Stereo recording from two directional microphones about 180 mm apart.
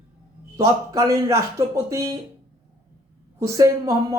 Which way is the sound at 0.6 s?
15° right (ahead or behind).